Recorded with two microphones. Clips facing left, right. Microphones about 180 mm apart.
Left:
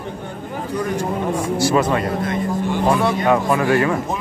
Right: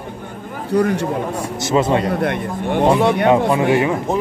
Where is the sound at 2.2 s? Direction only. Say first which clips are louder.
Right 1 dB; 60° right (ahead or behind).